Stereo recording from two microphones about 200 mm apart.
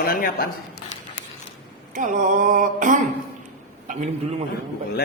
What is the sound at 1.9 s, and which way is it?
A man's voice, 40° right (ahead or behind).